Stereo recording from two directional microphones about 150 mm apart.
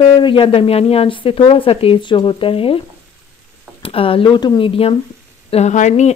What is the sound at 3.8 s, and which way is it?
A woman's voice, 40° left (ahead or behind).